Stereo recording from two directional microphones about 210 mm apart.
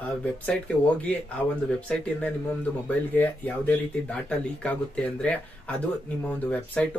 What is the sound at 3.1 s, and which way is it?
Speech, 10° left (ahead or behind).